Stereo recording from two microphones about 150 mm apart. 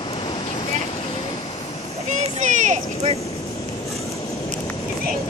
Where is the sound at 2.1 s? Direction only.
55° right (ahead or behind).